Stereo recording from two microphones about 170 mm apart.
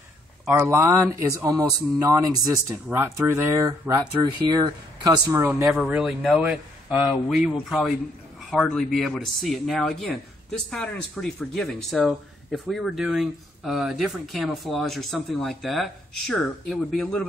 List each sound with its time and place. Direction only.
0.5 s speech: 15° right (ahead or behind); by 17.2 s 5° left (ahead or behind)